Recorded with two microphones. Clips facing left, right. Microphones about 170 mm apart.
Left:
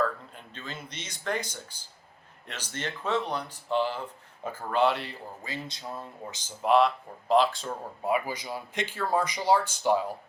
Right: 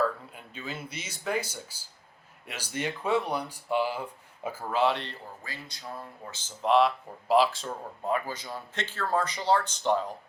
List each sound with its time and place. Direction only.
0.3 s speech: 10° right (ahead or behind)
5.4 s speech: 20° left (ahead or behind)
6.6 s speech: centre (ahead or behind)
8.0 s a man's voice: 10° left (ahead or behind)